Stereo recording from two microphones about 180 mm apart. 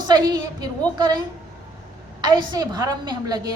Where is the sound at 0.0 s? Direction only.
25° right (ahead or behind).